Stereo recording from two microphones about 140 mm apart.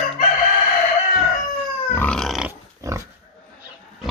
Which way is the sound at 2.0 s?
5° left (ahead or behind).